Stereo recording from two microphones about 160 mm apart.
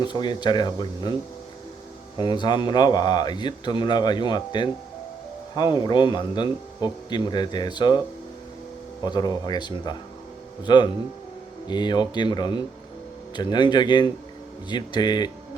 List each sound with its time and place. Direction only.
0.0 s speech: 30° left (ahead or behind)
2.1 s speech: 25° left (ahead or behind)
9.0 s speech: 25° left (ahead or behind)